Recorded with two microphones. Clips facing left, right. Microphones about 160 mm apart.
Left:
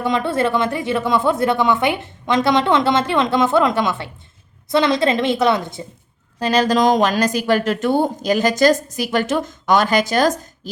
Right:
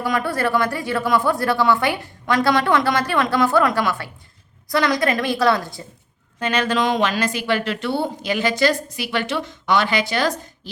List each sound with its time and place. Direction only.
0.0 s speech: 25° left (ahead or behind)
6.4 s speech: 35° left (ahead or behind)